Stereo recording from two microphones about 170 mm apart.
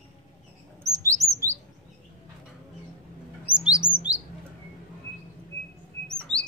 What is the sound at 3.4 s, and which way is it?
Chirp, 5° right (ahead or behind).